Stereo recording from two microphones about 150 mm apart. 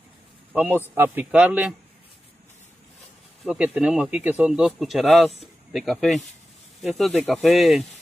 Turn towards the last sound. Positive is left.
turn(degrees=0)  # may be behind; listen again after turning